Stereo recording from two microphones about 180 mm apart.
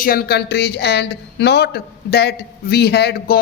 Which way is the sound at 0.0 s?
55° left (ahead or behind).